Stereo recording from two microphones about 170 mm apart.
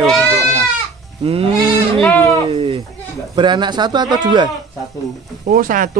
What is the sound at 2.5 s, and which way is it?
Speech, 30° right (ahead or behind).